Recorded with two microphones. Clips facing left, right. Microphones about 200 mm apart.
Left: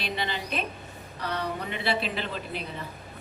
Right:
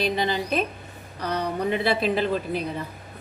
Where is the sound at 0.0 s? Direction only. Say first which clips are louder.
Right 8 dB; 45° right (ahead or behind).